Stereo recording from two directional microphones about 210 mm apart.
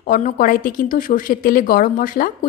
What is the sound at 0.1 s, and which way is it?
A woman's voice, 40° left (ahead or behind).